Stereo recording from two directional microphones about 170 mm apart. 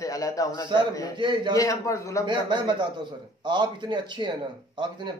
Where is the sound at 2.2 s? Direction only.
25° right (ahead or behind).